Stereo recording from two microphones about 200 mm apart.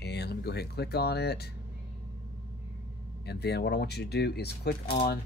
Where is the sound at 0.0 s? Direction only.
55° left (ahead or behind).